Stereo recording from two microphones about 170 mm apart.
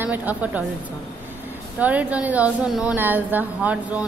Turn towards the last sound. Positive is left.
turn(degrees=-10)  # may be behind; listen again after turning